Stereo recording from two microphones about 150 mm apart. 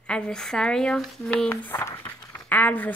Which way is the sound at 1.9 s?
35° left (ahead or behind).